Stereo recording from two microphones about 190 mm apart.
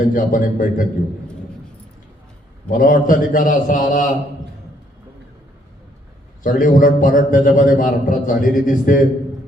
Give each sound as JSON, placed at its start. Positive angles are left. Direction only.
{"t": 0.0, "sound": "a man's voice", "side_deg": 45}
{"t": 2.6, "sound": "a man's voice", "side_deg": 45}
{"t": 6.4, "sound": "a man's voice", "side_deg": 45}